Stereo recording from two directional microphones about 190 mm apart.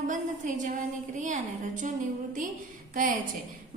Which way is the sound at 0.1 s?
45° right (ahead or behind).